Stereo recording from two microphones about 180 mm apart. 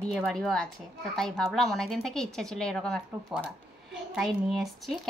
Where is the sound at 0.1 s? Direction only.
Centre (ahead or behind).